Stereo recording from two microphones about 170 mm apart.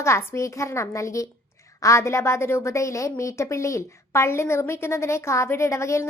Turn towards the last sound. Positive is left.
turn(degrees=15)  # may be behind; listen again after turning